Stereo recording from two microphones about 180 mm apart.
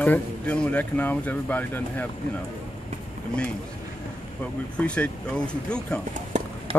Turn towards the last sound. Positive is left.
turn(degrees=-35)  # may be behind; listen again after turning